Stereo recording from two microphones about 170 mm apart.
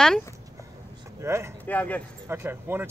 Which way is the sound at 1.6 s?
10° left (ahead or behind).